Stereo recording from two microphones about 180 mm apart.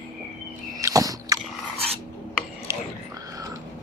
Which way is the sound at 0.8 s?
20° right (ahead or behind).